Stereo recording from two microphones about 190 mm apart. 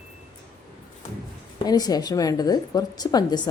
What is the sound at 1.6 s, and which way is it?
Speech, 20° left (ahead or behind).